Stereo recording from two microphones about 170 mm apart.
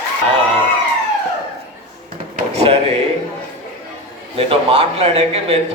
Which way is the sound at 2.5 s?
40° right (ahead or behind).